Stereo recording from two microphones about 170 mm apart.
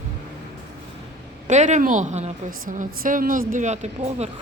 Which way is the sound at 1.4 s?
45° right (ahead or behind).